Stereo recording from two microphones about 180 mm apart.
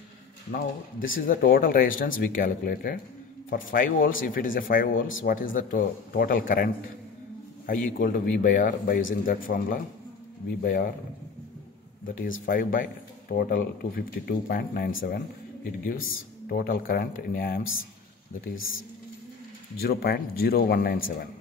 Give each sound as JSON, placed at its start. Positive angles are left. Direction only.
{"t": 0.5, "sound": "speech", "side_deg": 50}
{"t": 12.2, "sound": "speech", "side_deg": 50}
{"t": 14.9, "sound": "speech", "side_deg": 90}
{"t": 16.0, "sound": "speech", "side_deg": 75}
{"t": 19.8, "sound": "speech", "side_deg": 55}